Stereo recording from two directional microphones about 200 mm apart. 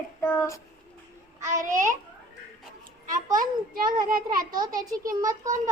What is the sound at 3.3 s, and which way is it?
Speech, 45° right (ahead or behind).